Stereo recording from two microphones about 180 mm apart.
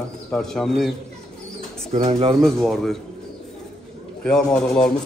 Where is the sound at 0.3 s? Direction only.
5° left (ahead or behind).